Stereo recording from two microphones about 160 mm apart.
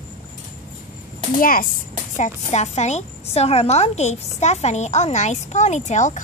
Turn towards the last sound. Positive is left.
turn(degrees=50)  # may be behind; listen again after turning